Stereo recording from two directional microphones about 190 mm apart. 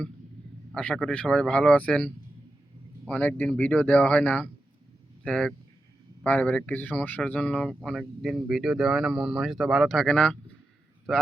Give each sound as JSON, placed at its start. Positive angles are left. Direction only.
{"t": 0.7, "sound": "speech", "side_deg": 5}
{"t": 3.1, "sound": "speech", "side_deg": 10}